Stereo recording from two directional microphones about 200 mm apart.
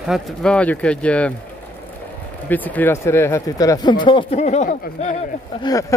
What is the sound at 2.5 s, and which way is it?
Speech, 10° left (ahead or behind).